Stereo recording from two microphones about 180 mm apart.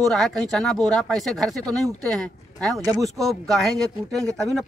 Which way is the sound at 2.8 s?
20° right (ahead or behind).